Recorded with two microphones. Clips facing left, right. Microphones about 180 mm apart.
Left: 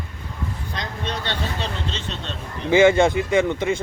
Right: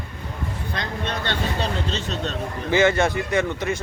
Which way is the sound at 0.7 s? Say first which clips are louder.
Right 2 dB; 55° right (ahead or behind).